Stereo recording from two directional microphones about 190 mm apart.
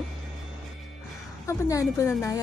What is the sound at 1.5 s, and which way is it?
Speech, 15° left (ahead or behind).